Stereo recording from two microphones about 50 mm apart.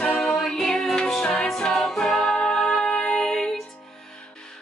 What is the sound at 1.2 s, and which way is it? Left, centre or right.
Music, left.